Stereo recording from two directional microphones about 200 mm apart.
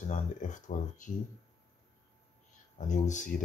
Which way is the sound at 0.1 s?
40° left (ahead or behind).